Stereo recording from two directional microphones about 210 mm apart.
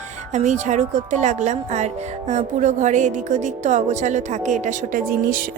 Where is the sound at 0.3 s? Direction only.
35° right (ahead or behind).